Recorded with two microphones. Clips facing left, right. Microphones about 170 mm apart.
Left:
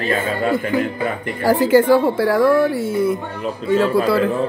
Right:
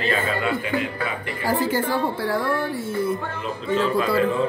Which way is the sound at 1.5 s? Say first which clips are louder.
Left 10 dB; 90° left.